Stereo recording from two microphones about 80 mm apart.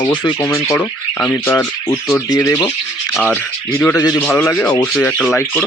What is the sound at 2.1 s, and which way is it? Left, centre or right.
Speech, left.